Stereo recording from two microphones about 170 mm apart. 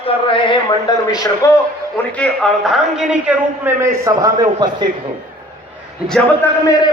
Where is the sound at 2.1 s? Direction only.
5° left (ahead or behind); by 4.8 s 25° right (ahead or behind).